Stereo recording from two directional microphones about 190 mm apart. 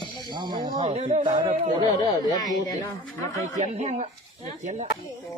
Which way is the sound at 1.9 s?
25° left (ahead or behind).